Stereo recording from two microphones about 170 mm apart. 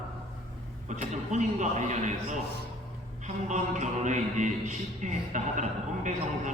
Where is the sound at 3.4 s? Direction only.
45° right (ahead or behind).